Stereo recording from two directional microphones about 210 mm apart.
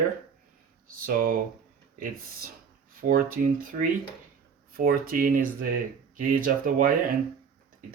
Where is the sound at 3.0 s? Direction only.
40° right (ahead or behind).